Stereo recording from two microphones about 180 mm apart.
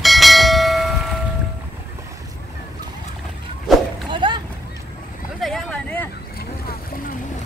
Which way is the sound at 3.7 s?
Centre (ahead or behind).